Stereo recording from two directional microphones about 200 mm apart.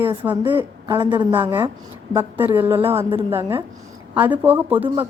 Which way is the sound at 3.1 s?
30° right (ahead or behind).